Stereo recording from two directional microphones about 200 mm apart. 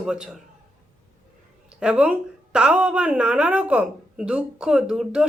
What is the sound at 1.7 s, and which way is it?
A woman's voice, 5° right (ahead or behind).